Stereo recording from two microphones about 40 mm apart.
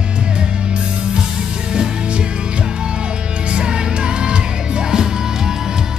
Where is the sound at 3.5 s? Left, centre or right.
Right.